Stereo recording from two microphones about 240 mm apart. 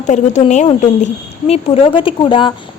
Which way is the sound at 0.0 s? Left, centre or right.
Left.